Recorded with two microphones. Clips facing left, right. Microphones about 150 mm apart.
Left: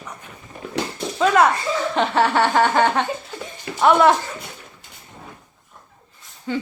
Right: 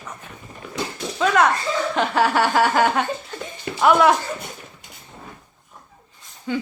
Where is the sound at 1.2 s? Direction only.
Centre (ahead or behind).